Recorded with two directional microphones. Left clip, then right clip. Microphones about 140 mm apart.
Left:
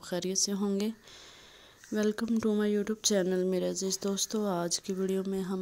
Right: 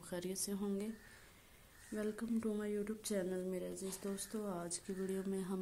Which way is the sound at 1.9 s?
90° left.